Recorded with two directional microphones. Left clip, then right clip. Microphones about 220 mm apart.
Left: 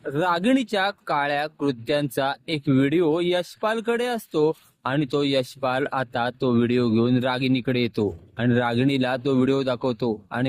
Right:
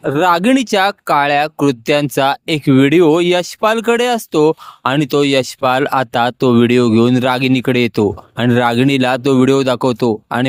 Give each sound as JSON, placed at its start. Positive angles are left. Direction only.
{"t": 0.0, "sound": "speech", "side_deg": -30}